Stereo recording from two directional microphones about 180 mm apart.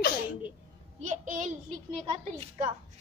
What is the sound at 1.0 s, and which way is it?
Speech, 45° right (ahead or behind).